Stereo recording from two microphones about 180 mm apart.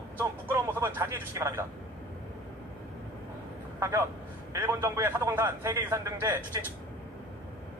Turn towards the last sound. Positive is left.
turn(degrees=-15)  # may be behind; listen again after turning